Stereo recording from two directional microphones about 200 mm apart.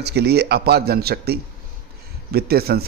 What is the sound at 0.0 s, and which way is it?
A man's voice, 55° right (ahead or behind).